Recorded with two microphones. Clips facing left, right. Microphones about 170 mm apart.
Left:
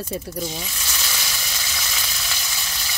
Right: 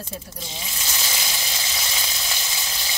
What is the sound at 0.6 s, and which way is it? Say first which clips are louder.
Sizzle: right 1 dB; 20° right (ahead or behind).